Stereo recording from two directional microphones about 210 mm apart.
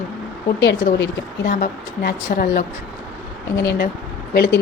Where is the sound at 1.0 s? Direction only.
45° left (ahead or behind).